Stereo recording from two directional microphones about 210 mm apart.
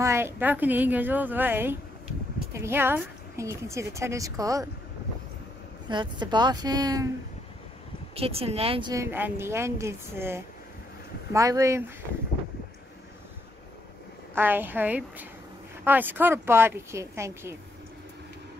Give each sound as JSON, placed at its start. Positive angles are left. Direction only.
{"t": 0.0, "sound": "speech", "side_deg": -10}
{"t": 5.9, "sound": "speech", "side_deg": -20}
{"t": 8.2, "sound": "speech", "side_deg": -30}
{"t": 14.3, "sound": "speech", "side_deg": -10}